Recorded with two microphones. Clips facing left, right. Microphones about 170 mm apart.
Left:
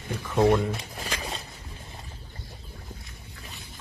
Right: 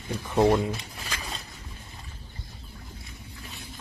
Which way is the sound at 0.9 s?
35° left (ahead or behind).